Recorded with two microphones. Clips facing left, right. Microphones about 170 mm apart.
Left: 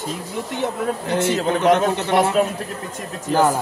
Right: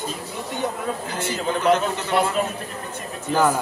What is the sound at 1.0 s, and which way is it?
A man's voice, 70° left (ahead or behind).